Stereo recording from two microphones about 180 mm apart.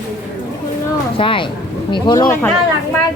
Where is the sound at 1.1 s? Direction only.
30° left (ahead or behind).